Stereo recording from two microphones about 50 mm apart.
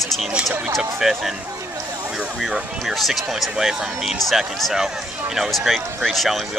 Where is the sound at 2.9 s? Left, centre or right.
Centre.